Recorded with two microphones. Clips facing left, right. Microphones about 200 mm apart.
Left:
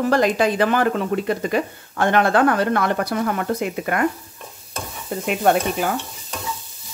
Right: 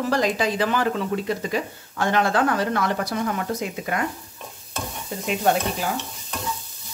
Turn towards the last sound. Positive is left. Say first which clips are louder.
# left 4 dB
turn(degrees=55)  # may be behind; listen again after turning